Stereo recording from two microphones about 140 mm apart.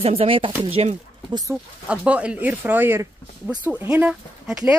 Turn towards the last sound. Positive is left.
turn(degrees=-5)  # may be behind; listen again after turning